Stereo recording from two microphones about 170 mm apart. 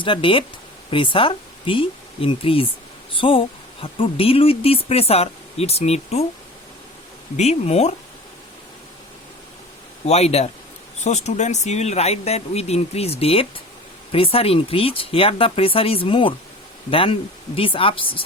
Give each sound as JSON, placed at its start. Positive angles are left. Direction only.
{"t": 0.0, "sound": "speech", "side_deg": 30}
{"t": 7.3, "sound": "speech", "side_deg": 40}
{"t": 10.1, "sound": "speech", "side_deg": 40}